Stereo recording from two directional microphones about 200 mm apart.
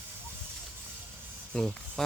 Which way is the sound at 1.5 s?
Centre (ahead or behind).